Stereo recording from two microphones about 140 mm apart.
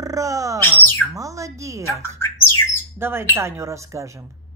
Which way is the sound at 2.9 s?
15° right (ahead or behind).